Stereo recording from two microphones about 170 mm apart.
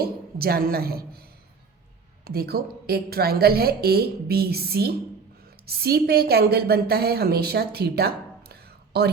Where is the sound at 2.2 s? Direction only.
65° right (ahead or behind).